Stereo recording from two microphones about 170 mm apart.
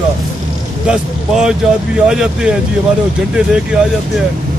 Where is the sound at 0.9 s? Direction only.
5° right (ahead or behind).